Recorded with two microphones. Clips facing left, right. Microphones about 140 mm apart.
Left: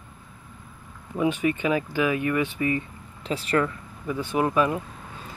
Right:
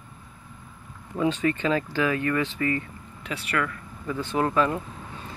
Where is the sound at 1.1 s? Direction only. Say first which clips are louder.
Left 1 dB; 15° left (ahead or behind).